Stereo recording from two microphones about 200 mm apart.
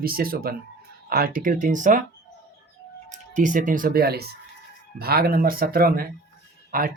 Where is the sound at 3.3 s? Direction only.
40° right (ahead or behind).